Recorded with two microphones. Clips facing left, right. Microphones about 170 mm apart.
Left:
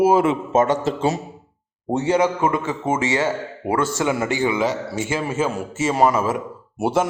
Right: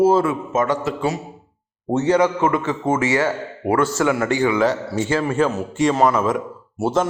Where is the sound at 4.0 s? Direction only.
20° left (ahead or behind).